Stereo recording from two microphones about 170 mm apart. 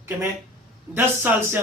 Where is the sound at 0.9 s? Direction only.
10° right (ahead or behind).